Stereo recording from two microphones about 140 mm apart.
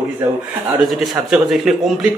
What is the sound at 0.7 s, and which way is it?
A man's voice, centre (ahead or behind).